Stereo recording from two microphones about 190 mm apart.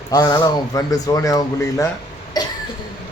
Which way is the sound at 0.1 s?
20° left (ahead or behind).